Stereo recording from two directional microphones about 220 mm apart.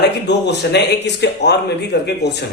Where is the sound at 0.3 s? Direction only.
50° left (ahead or behind).